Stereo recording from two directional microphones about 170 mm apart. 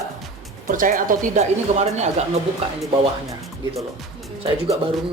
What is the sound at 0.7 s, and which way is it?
Speech, 50° right (ahead or behind).